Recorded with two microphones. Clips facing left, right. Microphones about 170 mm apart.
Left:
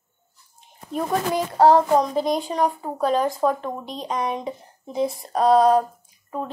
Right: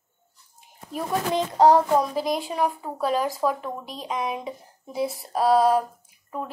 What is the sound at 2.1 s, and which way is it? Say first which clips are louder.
Speech: left 3 dB; 5° right (ahead or behind).